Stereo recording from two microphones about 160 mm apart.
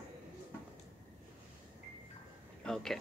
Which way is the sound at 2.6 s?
5° left (ahead or behind).